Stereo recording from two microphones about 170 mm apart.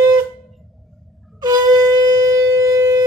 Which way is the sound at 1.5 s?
20° right (ahead or behind).